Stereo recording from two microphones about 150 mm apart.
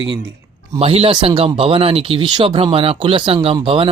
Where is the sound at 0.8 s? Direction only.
40° right (ahead or behind).